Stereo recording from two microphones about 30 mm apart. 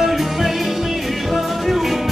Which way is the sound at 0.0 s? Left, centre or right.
Centre.